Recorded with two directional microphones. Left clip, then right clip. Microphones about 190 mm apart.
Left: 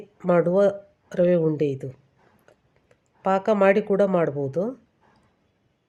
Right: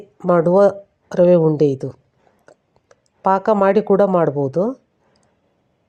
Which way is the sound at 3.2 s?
25° right (ahead or behind).